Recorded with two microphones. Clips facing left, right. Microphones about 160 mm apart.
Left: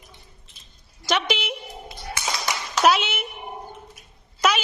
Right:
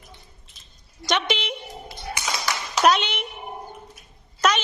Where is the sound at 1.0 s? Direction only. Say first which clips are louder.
Even; 5° left (ahead or behind).